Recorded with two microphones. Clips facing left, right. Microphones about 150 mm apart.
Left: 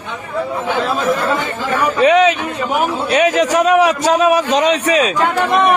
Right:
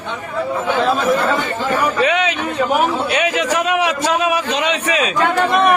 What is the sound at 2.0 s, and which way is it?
A man's voice, 35° left (ahead or behind).